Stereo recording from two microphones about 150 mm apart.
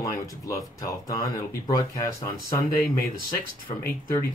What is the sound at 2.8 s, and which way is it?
Speech, 75° left (ahead or behind).